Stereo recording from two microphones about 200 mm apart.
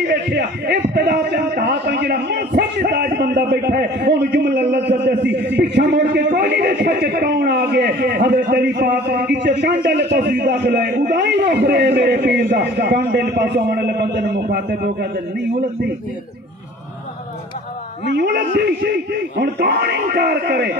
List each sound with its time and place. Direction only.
0.1 s a man's voice: 60° right (ahead or behind)
18.1 s a man's voice: 55° right (ahead or behind)